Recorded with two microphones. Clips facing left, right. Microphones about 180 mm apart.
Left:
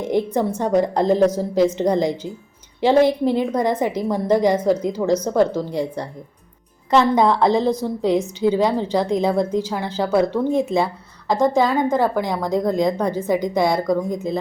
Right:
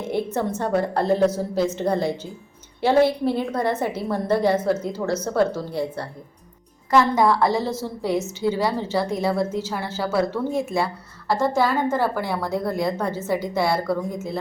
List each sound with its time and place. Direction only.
0.0 s a woman's voice: 15° left (ahead or behind)